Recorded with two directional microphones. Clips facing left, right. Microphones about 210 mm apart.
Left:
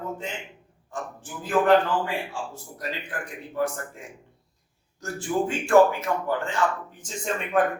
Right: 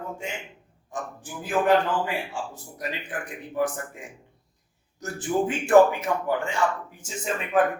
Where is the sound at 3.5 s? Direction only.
15° right (ahead or behind).